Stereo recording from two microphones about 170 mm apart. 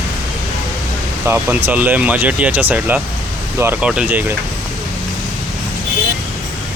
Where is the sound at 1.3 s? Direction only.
10° right (ahead or behind).